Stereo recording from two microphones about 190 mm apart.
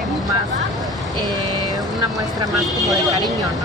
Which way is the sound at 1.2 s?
20° right (ahead or behind).